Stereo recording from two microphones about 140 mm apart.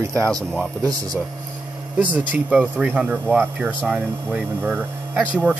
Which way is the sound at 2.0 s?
10° right (ahead or behind).